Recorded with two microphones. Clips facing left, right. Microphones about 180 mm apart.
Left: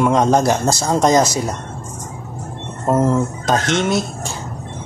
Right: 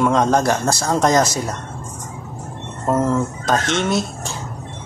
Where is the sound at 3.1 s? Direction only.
15° left (ahead or behind).